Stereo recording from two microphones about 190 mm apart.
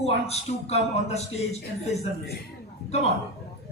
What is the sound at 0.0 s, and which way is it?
A man's voice, 35° left (ahead or behind).